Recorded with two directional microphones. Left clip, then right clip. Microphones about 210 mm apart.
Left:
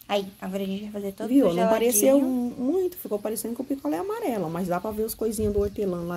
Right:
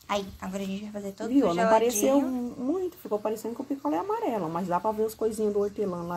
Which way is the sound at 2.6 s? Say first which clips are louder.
Left 4 dB; 55° left (ahead or behind).